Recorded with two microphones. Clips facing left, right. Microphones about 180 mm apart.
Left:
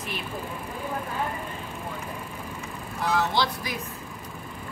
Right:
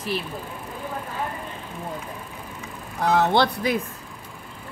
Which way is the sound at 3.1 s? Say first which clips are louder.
Right 6 dB; 60° right (ahead or behind).